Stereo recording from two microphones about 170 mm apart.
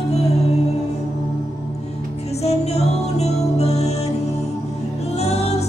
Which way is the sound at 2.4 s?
40° left (ahead or behind).